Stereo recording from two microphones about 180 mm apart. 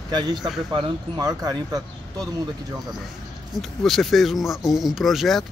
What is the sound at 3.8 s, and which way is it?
Speech, centre (ahead or behind).